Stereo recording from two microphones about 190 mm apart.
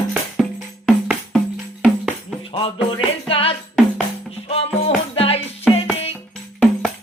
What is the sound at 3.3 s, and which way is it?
Music, 30° left (ahead or behind).